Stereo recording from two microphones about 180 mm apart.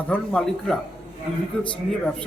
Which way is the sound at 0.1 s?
5° left (ahead or behind).